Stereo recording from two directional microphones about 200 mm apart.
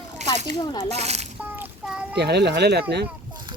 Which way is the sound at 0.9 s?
35° right (ahead or behind).